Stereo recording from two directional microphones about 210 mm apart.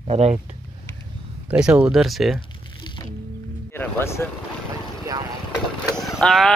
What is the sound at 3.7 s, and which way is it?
Music, 10° left (ahead or behind).